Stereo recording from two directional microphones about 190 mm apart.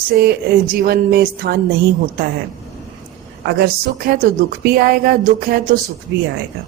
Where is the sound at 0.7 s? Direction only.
50° right (ahead or behind).